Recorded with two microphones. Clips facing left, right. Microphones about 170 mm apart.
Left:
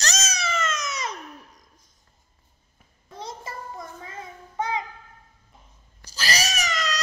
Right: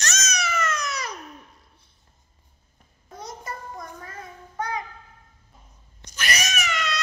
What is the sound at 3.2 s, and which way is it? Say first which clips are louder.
Child singing: even; 25° left (ahead or behind).